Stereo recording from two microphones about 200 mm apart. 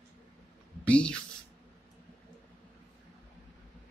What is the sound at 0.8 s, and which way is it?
Speech, 5° left (ahead or behind).